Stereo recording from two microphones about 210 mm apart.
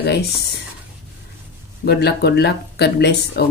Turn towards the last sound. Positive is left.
turn(degrees=50)  # may be behind; listen again after turning